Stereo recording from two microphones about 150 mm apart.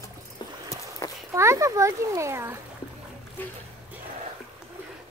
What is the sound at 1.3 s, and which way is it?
A child's voice, 20° right (ahead or behind).